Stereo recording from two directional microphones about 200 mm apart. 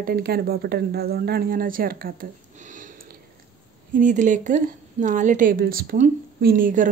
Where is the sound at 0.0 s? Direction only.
50° right (ahead or behind).